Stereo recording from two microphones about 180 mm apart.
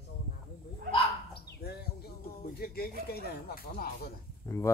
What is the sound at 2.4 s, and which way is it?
Speech, 55° left (ahead or behind).